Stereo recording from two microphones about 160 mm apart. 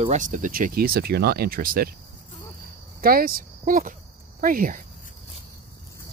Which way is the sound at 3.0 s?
65° right (ahead or behind).